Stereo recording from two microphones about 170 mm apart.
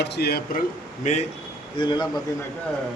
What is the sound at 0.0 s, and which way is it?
Speech, 75° left (ahead or behind).